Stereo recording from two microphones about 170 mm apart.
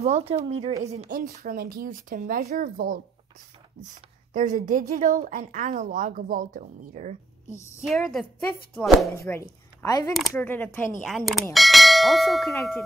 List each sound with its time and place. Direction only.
0.0 s a woman's voice: 35° right (ahead or behind)
1.1 s speech: 55° right (ahead or behind)
4.3 s a woman's voice: 50° right (ahead or behind)
7.4 s a woman's voice: 15° left (ahead or behind)
7.8 s a woman's voice: centre (ahead or behind)
9.8 s speech: 20° left (ahead or behind)
11.0 s a woman's voice: centre (ahead or behind)
11.5 s church bell: centre (ahead or behind)